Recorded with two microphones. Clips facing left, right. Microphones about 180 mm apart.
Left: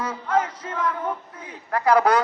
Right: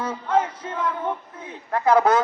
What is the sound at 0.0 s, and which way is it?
Music, 30° right (ahead or behind).